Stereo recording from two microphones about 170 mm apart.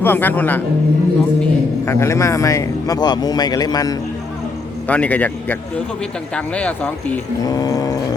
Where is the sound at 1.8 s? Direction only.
15° left (ahead or behind).